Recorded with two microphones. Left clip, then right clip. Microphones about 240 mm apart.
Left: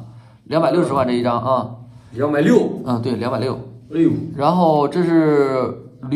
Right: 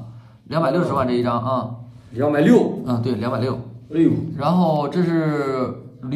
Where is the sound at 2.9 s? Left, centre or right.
Left.